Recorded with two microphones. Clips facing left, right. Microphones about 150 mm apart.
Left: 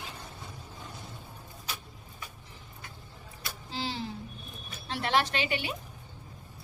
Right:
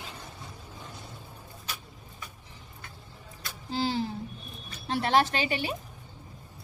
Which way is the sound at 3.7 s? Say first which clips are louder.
Right 7 dB; 40° right (ahead or behind).